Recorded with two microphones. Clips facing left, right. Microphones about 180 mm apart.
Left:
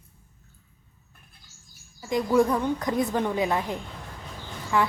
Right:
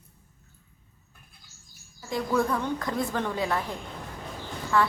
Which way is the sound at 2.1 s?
20° left (ahead or behind).